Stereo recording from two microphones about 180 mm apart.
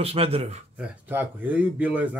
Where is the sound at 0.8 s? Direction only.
10° right (ahead or behind).